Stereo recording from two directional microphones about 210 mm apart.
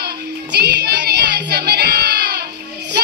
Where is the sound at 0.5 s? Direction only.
50° right (ahead or behind).